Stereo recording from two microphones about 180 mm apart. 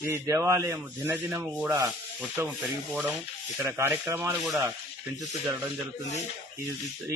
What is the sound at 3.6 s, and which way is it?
Rub, 10° right (ahead or behind).